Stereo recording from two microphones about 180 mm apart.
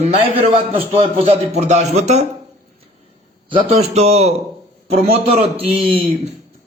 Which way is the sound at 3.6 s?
35° right (ahead or behind).